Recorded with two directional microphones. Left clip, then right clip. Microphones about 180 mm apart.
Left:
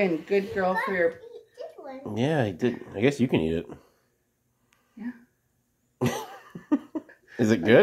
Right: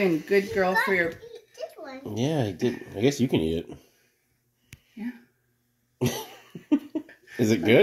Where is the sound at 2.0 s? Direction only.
35° left (ahead or behind).